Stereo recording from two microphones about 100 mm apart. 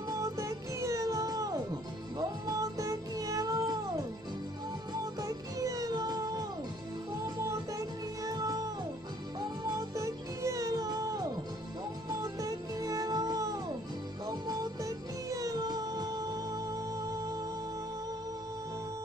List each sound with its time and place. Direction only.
0.1 s music: 35° right (ahead or behind)
5.2 s music: 35° right (ahead or behind)